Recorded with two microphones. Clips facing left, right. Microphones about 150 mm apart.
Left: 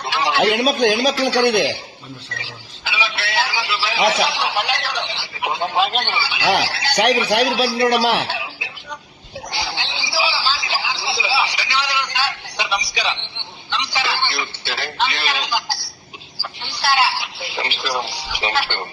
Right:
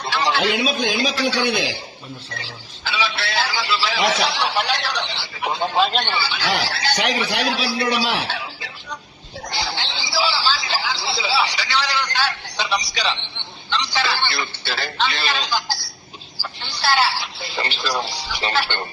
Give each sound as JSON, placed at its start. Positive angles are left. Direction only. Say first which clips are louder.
{"t": 0.1, "sound": "a sound", "louder": "even", "side_deg": 10}
{"t": 0.3, "sound": "a man's voice", "louder": "left 4 dB", "side_deg": 75}
{"t": 2.8, "sound": "a man's voice", "louder": "right 1 dB", "side_deg": 10}
{"t": 6.9, "sound": "a man's voice", "louder": "left 8 dB", "side_deg": 75}
{"t": 7.9, "sound": "speech", "louder": "left 5 dB", "side_deg": 55}
{"t": 8.4, "sound": "music", "louder": "left 1 dB", "side_deg": 10}
{"t": 9.5, "sound": "a sound", "louder": "even", "side_deg": 5}
{"t": 16.4, "sound": "a man's voice", "louder": "left 1 dB", "side_deg": 10}